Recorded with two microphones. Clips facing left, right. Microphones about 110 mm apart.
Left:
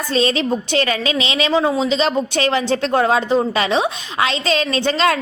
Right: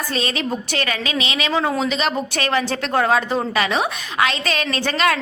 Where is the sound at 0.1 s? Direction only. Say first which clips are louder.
Left 8 dB; 30° left (ahead or behind).